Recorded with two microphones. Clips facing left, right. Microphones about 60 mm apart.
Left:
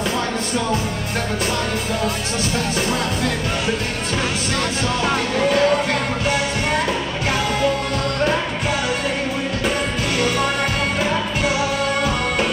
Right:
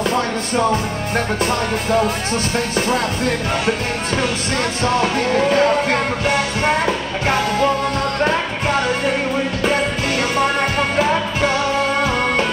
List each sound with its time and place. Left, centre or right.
5.3 s speech: right